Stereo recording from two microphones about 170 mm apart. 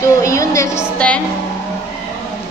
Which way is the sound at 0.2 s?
20° left (ahead or behind).